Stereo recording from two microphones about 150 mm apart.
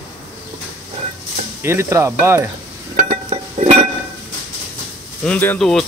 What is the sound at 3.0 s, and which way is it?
Chink, 55° right (ahead or behind).